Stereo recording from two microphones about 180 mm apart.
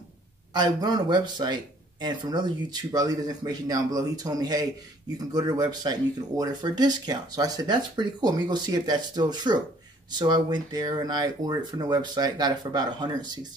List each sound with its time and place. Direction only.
0.5 s speech: 20° right (ahead or behind)